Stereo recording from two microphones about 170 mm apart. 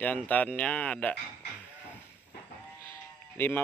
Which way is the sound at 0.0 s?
10° left (ahead or behind).